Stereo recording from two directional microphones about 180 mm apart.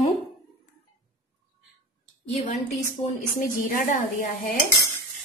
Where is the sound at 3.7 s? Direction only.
45° left (ahead or behind).